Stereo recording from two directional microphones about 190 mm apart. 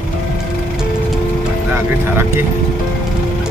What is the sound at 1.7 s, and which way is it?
Speech, 10° right (ahead or behind).